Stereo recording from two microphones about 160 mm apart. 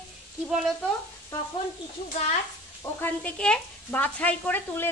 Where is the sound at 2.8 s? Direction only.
10° left (ahead or behind).